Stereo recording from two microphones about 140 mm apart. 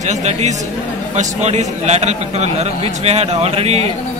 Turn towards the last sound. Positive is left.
turn(degrees=-45)  # may be behind; listen again after turning